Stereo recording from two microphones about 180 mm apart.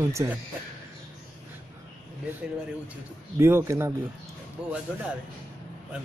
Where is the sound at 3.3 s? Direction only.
15° right (ahead or behind).